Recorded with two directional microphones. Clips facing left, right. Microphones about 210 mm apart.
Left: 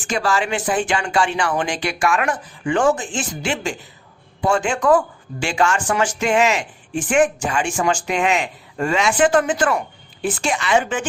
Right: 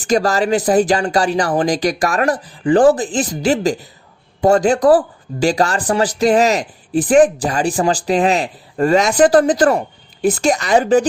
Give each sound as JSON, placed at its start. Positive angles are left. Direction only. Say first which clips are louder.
{"t": 0.0, "sound": "speech", "louder": "right 6 dB", "side_deg": -40}